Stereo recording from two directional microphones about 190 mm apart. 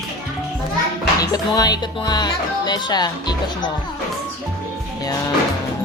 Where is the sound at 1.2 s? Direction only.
20° left (ahead or behind).